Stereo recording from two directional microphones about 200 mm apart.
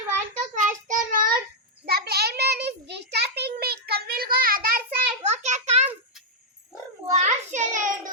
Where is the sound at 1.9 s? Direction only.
50° right (ahead or behind).